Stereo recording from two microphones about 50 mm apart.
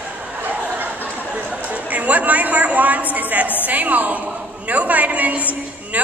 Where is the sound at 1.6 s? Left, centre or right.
Right.